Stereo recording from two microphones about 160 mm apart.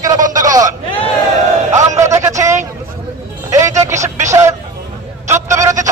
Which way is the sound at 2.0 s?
20° right (ahead or behind).